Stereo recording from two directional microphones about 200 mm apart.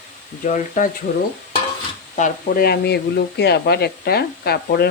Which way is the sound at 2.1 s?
45° left (ahead or behind).